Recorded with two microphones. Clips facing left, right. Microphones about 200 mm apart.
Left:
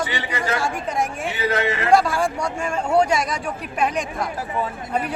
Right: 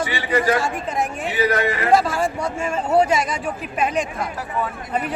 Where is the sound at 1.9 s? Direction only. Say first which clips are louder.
Left 1 dB; centre (ahead or behind).